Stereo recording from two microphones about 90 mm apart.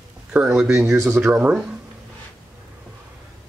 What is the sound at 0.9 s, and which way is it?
Speech, 35° right (ahead or behind).